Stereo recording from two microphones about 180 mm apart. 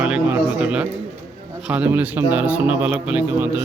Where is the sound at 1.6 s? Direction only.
10° right (ahead or behind).